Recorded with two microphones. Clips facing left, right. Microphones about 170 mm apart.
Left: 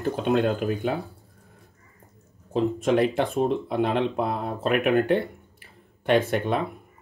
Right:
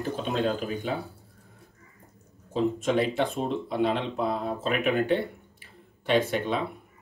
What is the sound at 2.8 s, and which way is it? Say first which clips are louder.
Speech: left 6 dB; 55° left (ahead or behind).